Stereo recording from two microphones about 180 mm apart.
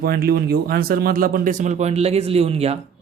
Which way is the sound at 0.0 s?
55° right (ahead or behind).